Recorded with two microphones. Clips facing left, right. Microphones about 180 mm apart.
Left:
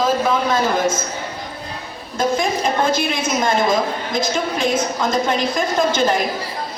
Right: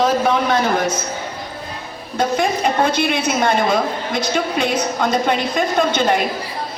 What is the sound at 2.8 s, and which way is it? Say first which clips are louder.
A woman's voice: right 2 dB; 65° right (ahead or behind).